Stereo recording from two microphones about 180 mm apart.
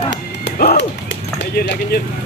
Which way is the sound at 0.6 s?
55° left (ahead or behind).